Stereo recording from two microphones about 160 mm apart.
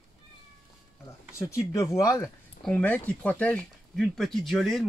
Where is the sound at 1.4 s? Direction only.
20° left (ahead or behind).